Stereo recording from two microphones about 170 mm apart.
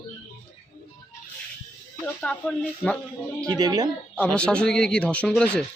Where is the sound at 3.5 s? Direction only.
25° right (ahead or behind).